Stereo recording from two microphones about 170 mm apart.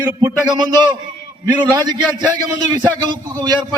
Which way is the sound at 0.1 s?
15° right (ahead or behind).